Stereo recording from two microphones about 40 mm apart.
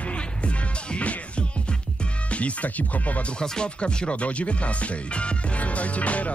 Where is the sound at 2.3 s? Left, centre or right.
Left.